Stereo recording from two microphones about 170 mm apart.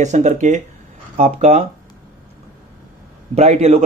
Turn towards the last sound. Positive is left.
turn(degrees=-40)  # may be behind; listen again after turning